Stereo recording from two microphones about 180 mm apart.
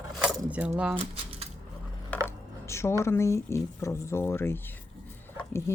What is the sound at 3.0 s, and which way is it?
Speech, 15° left (ahead or behind).